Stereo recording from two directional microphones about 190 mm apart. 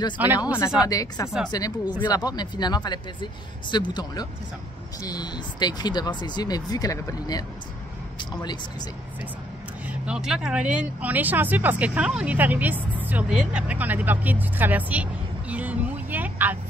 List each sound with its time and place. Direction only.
0.2 s speech: 10° right (ahead or behind)
0.8 s speech: 20° left (ahead or behind)
9.8 s speech: 5° right (ahead or behind)
15.5 s vehicle: 10° right (ahead or behind)